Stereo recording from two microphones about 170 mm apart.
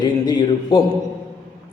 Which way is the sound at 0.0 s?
25° left (ahead or behind).